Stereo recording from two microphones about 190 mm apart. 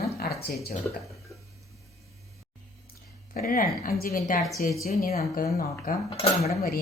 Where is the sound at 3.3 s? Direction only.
50° left (ahead or behind).